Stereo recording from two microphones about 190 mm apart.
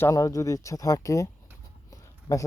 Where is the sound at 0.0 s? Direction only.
15° left (ahead or behind).